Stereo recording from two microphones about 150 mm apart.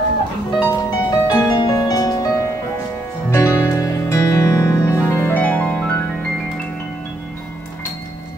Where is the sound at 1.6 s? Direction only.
25° left (ahead or behind); by 6.0 s 10° left (ahead or behind).